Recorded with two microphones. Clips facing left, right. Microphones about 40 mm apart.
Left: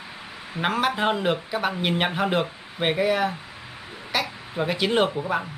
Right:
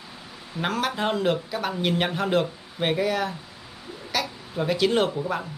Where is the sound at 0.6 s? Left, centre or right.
Centre.